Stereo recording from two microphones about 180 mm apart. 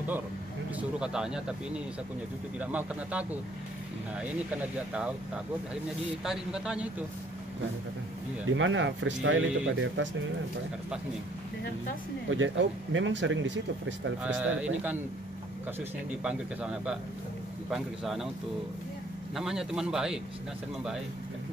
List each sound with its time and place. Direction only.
0.7 s speech: 5° right (ahead or behind)
8.5 s speech: 90° right
12.3 s speech: 90° right
14.2 s speech: 5° right (ahead or behind)
16.1 s speech: 5° right (ahead or behind)
19.3 s speech: 5° right (ahead or behind)